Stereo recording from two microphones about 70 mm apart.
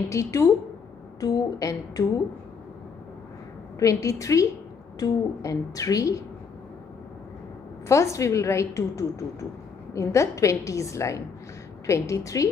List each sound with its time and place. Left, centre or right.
0.1 s a woman's voice: left
3.8 s a woman's voice: left
7.9 s a woman's voice: left